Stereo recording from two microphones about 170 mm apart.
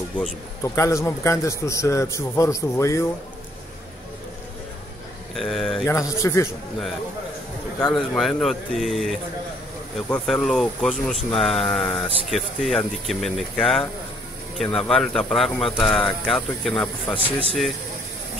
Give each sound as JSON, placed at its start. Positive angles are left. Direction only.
{"t": 0.6, "sound": "a man's voice", "side_deg": 15}
{"t": 5.3, "sound": "speech", "side_deg": 0}
{"t": 5.9, "sound": "a man's voice", "side_deg": 20}
{"t": 7.8, "sound": "speech", "side_deg": 5}